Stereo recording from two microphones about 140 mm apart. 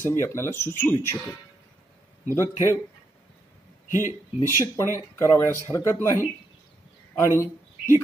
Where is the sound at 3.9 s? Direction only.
70° left (ahead or behind).